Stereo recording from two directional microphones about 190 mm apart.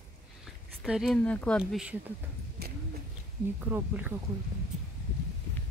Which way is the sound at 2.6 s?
55° right (ahead or behind).